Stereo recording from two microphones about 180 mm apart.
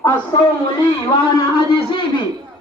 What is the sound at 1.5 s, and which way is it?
Speech, 30° left (ahead or behind).